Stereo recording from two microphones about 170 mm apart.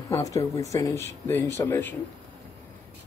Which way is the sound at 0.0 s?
20° left (ahead or behind).